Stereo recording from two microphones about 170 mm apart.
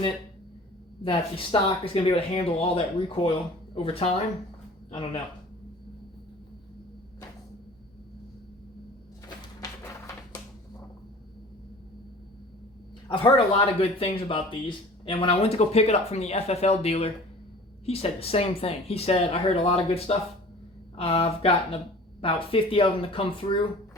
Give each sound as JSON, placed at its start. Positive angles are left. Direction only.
{"t": 1.0, "sound": "speech", "side_deg": 30}
{"t": 13.1, "sound": "speech", "side_deg": 30}